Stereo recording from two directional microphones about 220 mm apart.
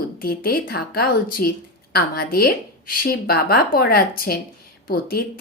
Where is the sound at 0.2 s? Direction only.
40° left (ahead or behind).